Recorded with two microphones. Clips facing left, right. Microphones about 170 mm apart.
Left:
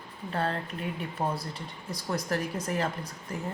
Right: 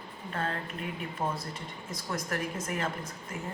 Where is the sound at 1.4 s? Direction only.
35° left (ahead or behind).